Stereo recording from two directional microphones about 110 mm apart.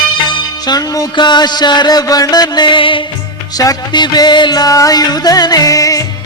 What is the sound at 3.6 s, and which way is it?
Music, 35° left (ahead or behind).